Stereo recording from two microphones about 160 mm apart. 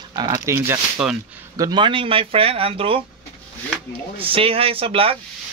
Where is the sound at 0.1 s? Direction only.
25° right (ahead or behind).